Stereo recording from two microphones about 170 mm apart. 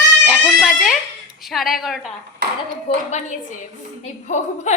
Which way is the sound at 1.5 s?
Centre (ahead or behind).